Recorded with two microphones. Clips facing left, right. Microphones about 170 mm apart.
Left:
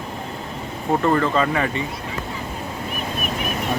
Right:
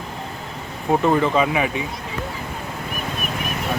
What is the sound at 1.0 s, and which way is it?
Speech, 15° right (ahead or behind).